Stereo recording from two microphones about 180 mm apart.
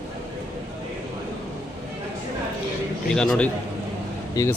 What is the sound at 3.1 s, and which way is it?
Speech, 5° left (ahead or behind).